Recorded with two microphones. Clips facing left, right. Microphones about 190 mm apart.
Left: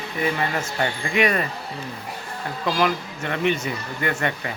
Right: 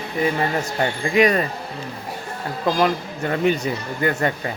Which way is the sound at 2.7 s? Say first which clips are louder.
Right 3 dB; 35° right (ahead or behind).